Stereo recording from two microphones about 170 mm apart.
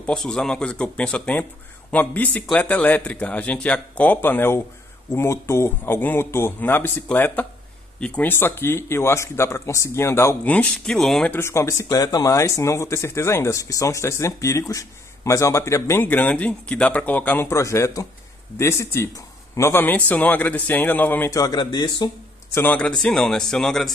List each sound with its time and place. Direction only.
0.0 s speech: 5° left (ahead or behind)
11.3 s speech: 15° left (ahead or behind)
22.6 s speech: 10° left (ahead or behind)